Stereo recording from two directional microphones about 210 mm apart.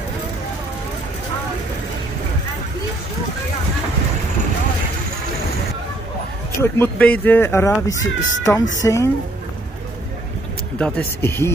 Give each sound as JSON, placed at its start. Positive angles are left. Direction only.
{"t": 6.6, "sound": "speech", "side_deg": 10}
{"t": 8.0, "sound": "speech", "side_deg": 65}
{"t": 8.8, "sound": "speech", "side_deg": 15}
{"t": 10.8, "sound": "speech", "side_deg": 10}